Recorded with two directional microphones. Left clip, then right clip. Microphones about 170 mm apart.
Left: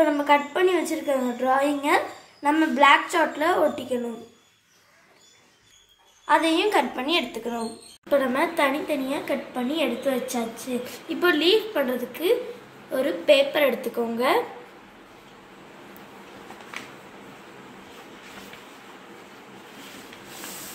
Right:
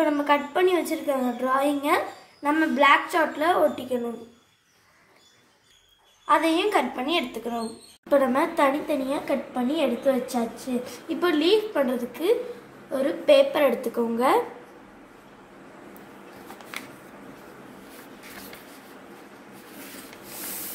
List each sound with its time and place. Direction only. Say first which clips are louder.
0.0 s a woman's voice: left 2 dB; 5° right (ahead or behind)
6.2 s a woman's voice: left 1 dB; centre (ahead or behind)
8.1 s a woman's voice: right 1 dB; 45° right (ahead or behind)